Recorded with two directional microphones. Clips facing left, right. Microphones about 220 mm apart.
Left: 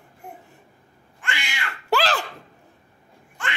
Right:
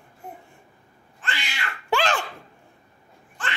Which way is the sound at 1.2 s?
15° left (ahead or behind).